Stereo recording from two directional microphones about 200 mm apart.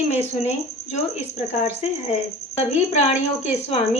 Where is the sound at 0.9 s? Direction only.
35° left (ahead or behind).